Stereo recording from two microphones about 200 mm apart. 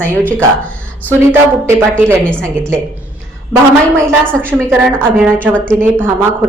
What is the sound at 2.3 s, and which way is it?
Speech, 5° left (ahead or behind).